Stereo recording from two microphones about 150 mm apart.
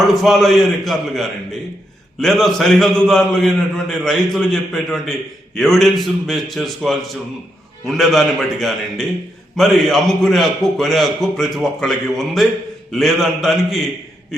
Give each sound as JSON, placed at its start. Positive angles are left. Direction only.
{"t": 0.0, "sound": "a man's voice", "side_deg": 0}